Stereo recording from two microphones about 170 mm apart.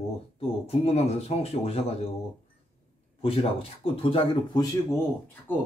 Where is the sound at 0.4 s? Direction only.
35° left (ahead or behind).